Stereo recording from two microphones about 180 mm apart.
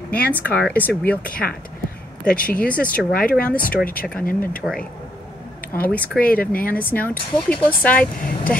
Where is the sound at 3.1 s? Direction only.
50° left (ahead or behind).